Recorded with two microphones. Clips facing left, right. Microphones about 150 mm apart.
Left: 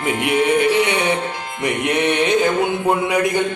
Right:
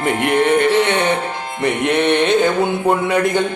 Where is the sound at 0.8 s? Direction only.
10° left (ahead or behind).